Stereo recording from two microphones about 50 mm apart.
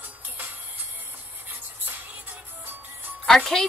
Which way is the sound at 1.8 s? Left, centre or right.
Right.